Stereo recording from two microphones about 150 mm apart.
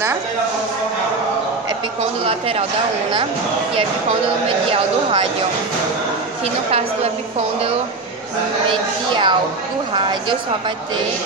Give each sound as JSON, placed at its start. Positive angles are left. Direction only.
{"t": 2.2, "sound": "speech", "side_deg": -40}
{"t": 8.6, "sound": "speech", "side_deg": -35}